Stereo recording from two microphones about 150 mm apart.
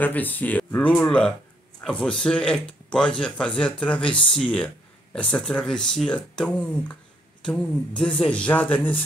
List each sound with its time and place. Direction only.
0.0 s speech: 10° left (ahead or behind)